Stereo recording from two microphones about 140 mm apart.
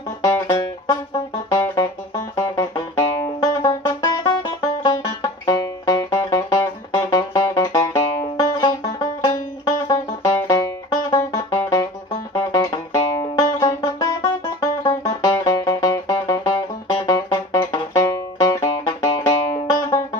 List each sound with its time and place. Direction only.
1.5 s music: 25° left (ahead or behind)